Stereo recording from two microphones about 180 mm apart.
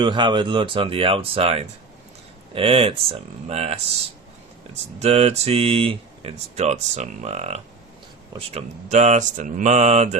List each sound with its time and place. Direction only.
0.0 s speech: 25° right (ahead or behind)
4.9 s speech: 35° right (ahead or behind)